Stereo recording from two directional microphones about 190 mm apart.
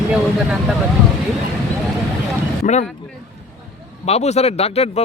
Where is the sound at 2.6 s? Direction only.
40° left (ahead or behind).